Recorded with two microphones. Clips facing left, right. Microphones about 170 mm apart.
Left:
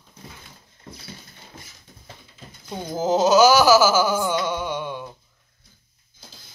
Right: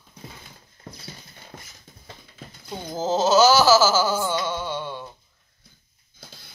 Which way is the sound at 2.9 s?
15° left (ahead or behind).